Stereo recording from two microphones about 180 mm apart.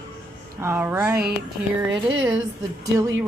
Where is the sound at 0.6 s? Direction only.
15° right (ahead or behind).